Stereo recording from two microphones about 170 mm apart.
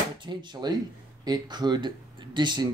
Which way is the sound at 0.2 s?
25° right (ahead or behind).